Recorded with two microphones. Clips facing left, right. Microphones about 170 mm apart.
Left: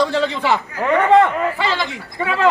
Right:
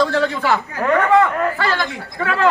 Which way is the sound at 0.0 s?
15° left (ahead or behind).